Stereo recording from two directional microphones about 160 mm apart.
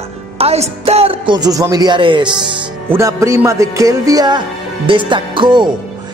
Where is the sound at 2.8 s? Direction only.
20° right (ahead or behind).